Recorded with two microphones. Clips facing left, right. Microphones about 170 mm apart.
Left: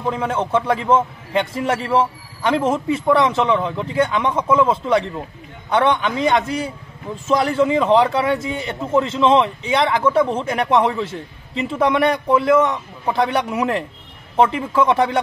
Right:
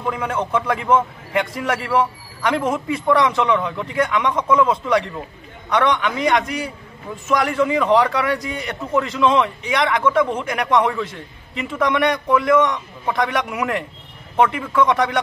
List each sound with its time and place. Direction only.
0.0 s a man's voice: 30° left (ahead or behind)